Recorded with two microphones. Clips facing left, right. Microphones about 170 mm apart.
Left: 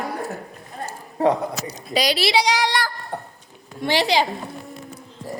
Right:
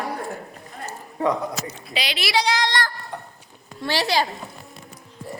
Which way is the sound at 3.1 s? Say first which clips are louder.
Left 4 dB; 50° left (ahead or behind).